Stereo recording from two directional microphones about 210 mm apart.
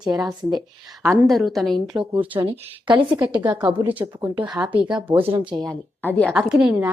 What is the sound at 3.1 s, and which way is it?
A woman's voice, 10° right (ahead or behind).